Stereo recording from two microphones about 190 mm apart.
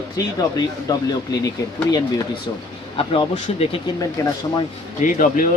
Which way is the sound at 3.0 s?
30° left (ahead or behind).